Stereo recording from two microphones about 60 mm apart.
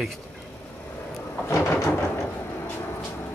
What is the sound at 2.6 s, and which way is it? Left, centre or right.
Vehicle, left.